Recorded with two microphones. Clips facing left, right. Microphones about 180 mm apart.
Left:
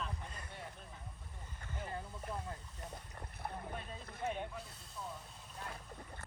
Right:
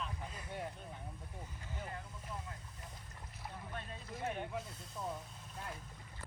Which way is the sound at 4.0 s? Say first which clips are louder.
Even; 55° left (ahead or behind).